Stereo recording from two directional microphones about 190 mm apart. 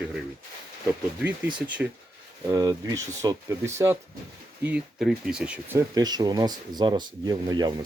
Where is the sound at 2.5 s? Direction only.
20° right (ahead or behind).